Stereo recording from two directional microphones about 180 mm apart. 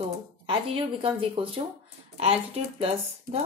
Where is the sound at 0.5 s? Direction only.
30° right (ahead or behind).